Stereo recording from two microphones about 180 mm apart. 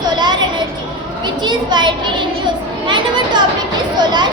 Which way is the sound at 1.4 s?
25° right (ahead or behind).